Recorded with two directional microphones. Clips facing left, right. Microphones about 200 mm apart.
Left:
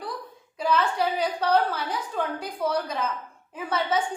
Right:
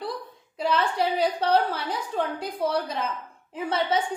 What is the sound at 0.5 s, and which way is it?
A woman's voice, 30° right (ahead or behind).